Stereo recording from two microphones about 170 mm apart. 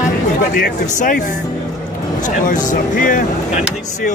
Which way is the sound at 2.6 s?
50° left (ahead or behind).